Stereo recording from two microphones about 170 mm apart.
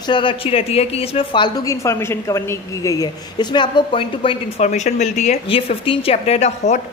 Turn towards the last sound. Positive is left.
turn(degrees=40)  # may be behind; listen again after turning